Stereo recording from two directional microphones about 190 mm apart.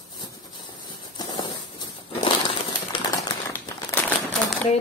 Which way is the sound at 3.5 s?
10° left (ahead or behind).